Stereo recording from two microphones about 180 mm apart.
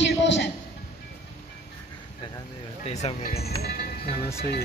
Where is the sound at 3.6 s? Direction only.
60° left (ahead or behind).